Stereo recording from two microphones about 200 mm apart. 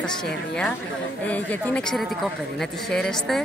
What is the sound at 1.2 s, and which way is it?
Speech, 5° left (ahead or behind).